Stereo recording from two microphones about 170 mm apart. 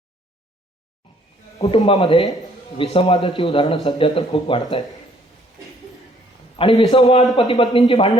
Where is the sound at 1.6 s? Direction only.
35° left (ahead or behind).